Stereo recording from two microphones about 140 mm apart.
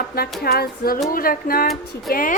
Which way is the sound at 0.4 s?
90° left.